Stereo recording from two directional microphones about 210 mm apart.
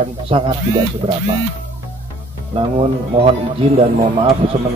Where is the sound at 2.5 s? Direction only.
25° right (ahead or behind).